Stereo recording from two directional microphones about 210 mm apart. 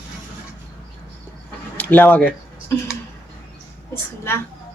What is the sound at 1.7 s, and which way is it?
Speech, 10° left (ahead or behind).